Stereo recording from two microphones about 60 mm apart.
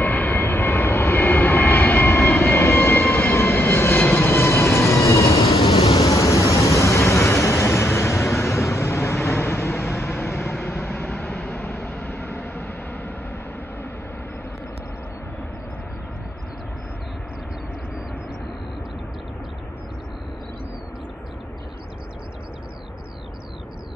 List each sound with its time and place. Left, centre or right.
0.0 s vehicle: left
4.2 s train: left
6.0 s vehicle: left